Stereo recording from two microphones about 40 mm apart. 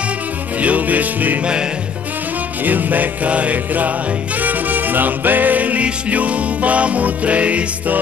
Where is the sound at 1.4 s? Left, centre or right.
Right.